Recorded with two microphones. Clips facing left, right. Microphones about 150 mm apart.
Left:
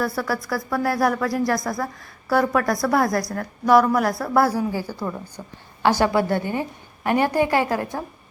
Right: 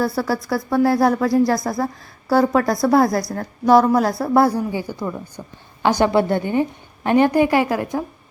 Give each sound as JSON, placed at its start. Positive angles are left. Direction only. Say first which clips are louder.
{"t": 0.0, "sound": "a woman's voice", "louder": "right 4 dB", "side_deg": -30}
{"t": 5.4, "sound": "a woman's voice", "louder": "right 2 dB", "side_deg": 0}
{"t": 5.8, "sound": "a woman's voice", "louder": "right 2 dB", "side_deg": -20}